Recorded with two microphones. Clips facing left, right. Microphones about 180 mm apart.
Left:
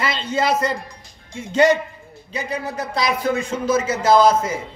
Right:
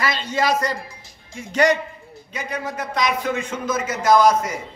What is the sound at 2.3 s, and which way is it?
A man's voice, 30° left (ahead or behind).